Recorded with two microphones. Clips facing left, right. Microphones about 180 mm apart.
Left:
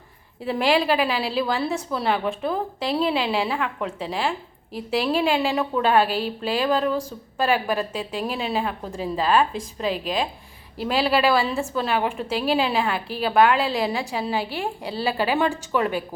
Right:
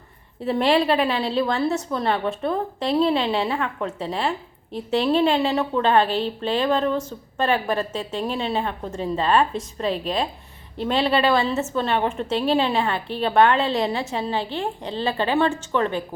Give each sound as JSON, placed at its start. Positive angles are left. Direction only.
{"t": 0.4, "sound": "a woman's voice", "side_deg": 0}